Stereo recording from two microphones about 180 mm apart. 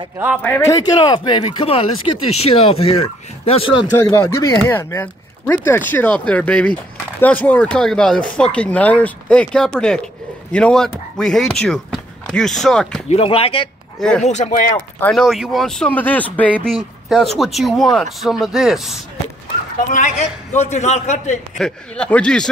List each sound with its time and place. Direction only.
0.4 s speech: 10° left (ahead or behind)
0.7 s speech: 20° left (ahead or behind)
4.0 s speech: 15° left (ahead or behind)
13.1 s speech: 30° left (ahead or behind)
14.2 s speech: 40° left (ahead or behind)
15.0 s speech: 5° left (ahead or behind)
19.9 s speech: 40° left (ahead or behind)
21.5 s speech: 5° left (ahead or behind)